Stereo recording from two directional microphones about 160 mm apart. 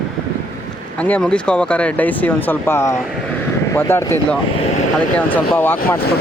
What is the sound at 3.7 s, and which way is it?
Speech, 15° left (ahead or behind).